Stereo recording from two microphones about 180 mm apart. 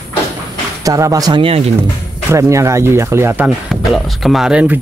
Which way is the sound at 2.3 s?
15° right (ahead or behind).